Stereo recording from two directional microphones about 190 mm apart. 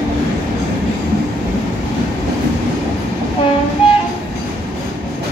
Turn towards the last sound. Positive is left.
turn(degrees=25)  # may be behind; listen again after turning